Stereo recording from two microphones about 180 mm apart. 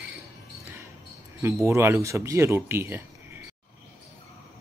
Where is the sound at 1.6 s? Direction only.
15° right (ahead or behind).